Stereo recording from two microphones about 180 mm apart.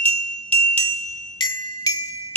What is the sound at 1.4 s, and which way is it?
Music, 20° left (ahead or behind).